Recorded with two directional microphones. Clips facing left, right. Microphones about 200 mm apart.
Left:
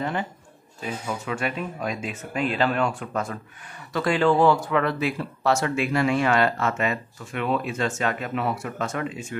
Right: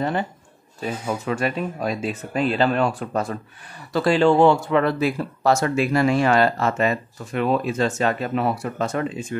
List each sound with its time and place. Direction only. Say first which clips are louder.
0.0 s speech: right 4 dB; 35° right (ahead or behind)